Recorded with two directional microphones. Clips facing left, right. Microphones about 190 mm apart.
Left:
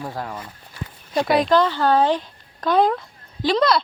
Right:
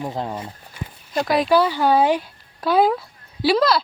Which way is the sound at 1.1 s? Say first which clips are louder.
Even; centre (ahead or behind).